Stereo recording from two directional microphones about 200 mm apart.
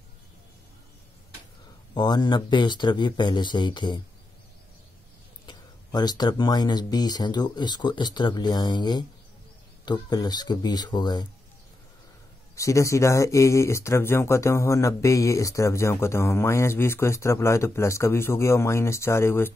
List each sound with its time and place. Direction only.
2.0 s speech: 20° left (ahead or behind)
5.5 s speech: 20° left (ahead or behind)
12.5 s speech: 15° left (ahead or behind)